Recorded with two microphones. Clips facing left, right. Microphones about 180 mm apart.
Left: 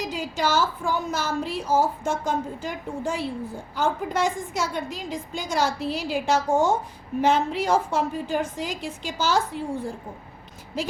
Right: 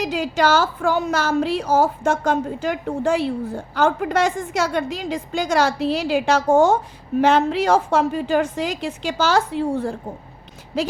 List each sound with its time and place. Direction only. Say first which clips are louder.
0.0 s a woman's voice: right 7 dB; 75° right (ahead or behind)